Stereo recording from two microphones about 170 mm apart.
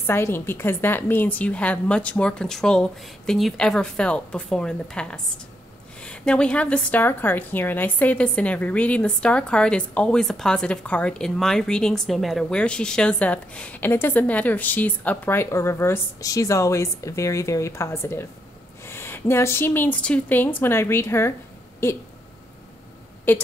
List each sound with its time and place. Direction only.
0.0 s a woman's voice: 15° left (ahead or behind)
23.3 s a woman's voice: 10° left (ahead or behind)